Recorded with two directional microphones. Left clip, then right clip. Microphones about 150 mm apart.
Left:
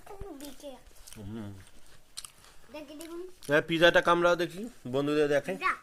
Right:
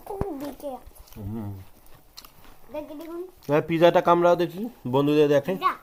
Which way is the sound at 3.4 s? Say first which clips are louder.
Right 4 dB; 10° left (ahead or behind).